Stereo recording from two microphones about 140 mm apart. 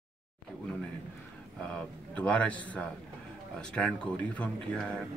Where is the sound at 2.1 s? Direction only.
10° left (ahead or behind).